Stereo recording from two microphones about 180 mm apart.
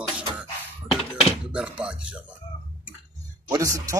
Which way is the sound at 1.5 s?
5° right (ahead or behind).